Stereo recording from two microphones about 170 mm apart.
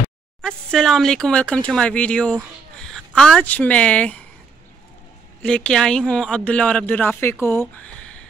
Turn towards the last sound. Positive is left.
turn(degrees=15)  # may be behind; listen again after turning